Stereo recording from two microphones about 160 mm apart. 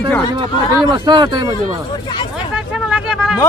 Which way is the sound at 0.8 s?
30° right (ahead or behind).